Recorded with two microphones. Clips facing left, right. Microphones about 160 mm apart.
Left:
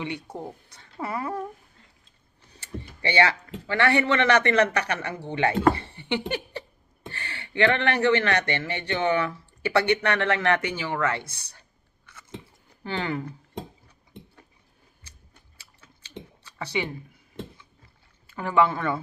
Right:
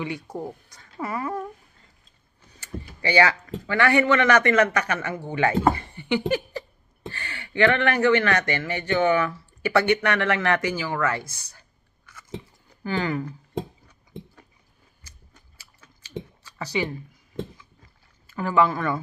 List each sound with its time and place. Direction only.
0.7 s speech: 30° left (ahead or behind)
2.5 s speech: 30° left (ahead or behind)
5.7 s a sound: 30° left (ahead or behind)
7.1 s speech: 30° left (ahead or behind)
12.1 s chewing: 30° left (ahead or behind)
12.8 s speech: 30° left (ahead or behind)
15.0 s a sound: 30° left (ahead or behind)
18.3 s speech: 25° left (ahead or behind)